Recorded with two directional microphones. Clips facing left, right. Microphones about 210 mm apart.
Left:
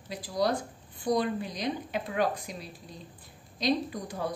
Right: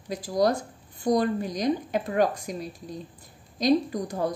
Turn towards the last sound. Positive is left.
turn(degrees=-45)  # may be behind; listen again after turning